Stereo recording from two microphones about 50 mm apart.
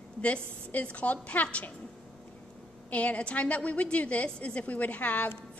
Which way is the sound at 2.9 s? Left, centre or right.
Left.